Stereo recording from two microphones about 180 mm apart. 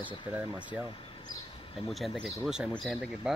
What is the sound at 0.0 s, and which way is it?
Speech, 10° right (ahead or behind).